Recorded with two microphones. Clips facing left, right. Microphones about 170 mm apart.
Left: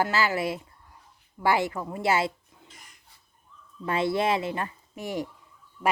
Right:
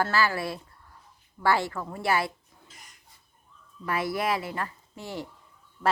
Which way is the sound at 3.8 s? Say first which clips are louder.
Left 3 dB; 25° left (ahead or behind).